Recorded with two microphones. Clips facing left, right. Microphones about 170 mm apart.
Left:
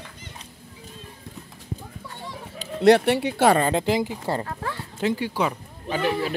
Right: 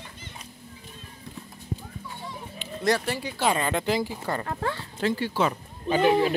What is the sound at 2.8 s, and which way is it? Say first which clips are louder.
Speech: left 9 dB; 65° left (ahead or behind).